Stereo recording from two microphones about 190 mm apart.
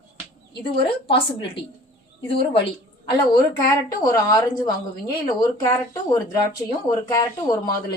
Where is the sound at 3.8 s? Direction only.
20° left (ahead or behind).